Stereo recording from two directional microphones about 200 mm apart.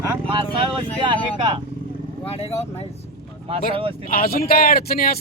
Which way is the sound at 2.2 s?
30° left (ahead or behind).